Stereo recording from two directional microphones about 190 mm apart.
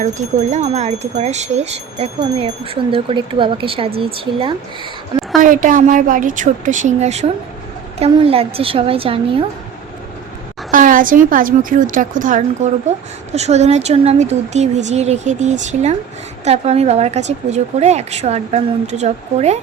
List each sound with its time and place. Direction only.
0.0 s speech: 40° right (ahead or behind)
5.4 s a woman's voice: 45° right (ahead or behind); by 9.5 s 30° right (ahead or behind)
10.7 s a woman's voice: 45° right (ahead or behind)